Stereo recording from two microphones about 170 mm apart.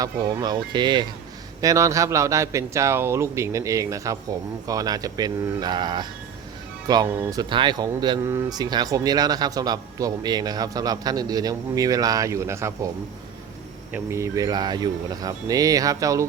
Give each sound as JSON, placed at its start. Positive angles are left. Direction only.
{"t": 0.0, "sound": "a man's voice", "side_deg": -20}
{"t": 13.9, "sound": "speech", "side_deg": -15}